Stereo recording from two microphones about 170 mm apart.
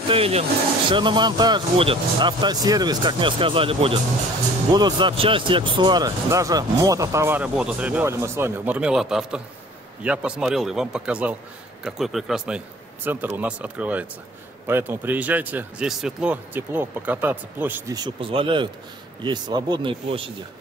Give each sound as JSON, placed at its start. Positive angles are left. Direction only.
{"t": 0.1, "sound": "a man's voice", "side_deg": -35}
{"t": 17.9, "sound": "speech", "side_deg": -30}